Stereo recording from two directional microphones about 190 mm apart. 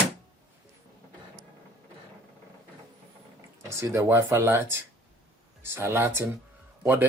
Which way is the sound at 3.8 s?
15° right (ahead or behind).